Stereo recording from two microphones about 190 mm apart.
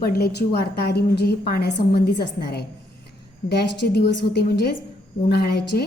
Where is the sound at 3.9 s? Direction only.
60° left (ahead or behind).